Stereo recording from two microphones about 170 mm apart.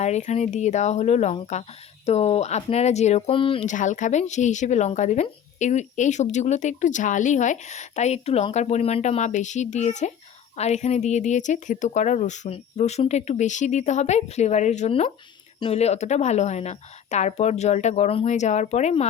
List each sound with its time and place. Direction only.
0.0 s a woman's voice: 40° left (ahead or behind)
3.7 s a woman's voice: 45° left (ahead or behind)